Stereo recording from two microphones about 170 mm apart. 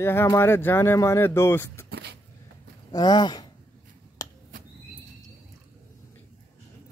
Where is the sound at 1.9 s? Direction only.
85° right.